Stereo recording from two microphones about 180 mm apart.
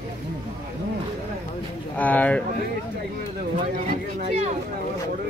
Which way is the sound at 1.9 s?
10° left (ahead or behind).